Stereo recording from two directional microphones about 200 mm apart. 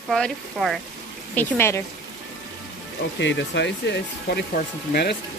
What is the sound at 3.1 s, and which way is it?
Speech, 60° left (ahead or behind).